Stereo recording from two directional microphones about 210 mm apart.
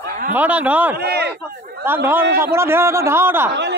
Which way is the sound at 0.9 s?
50° right (ahead or behind).